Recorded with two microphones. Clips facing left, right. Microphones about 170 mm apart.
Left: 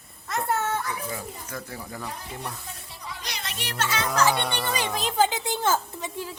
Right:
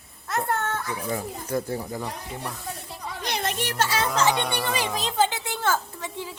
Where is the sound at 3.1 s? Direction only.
50° right (ahead or behind); by 4.1 s 35° right (ahead or behind).